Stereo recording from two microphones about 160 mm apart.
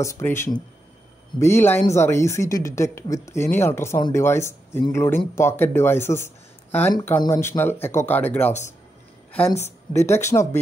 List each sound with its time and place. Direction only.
0.0 s speech: 15° left (ahead or behind)